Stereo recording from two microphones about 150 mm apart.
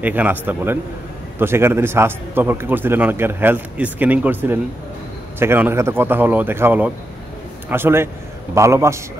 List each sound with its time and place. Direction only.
0.0 s a man's voice: 10° right (ahead or behind)